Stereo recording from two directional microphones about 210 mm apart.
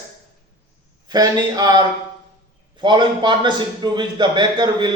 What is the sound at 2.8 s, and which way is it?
A man's voice, 20° right (ahead or behind).